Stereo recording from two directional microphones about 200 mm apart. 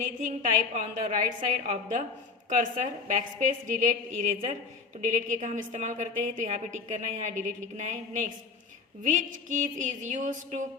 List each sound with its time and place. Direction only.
0.4 s a woman's voice: 40° right (ahead or behind)